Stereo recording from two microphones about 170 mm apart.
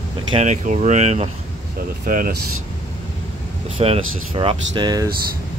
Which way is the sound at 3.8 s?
35° right (ahead or behind).